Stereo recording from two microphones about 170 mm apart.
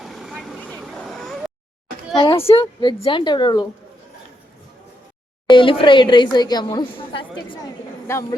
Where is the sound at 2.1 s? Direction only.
30° left (ahead or behind).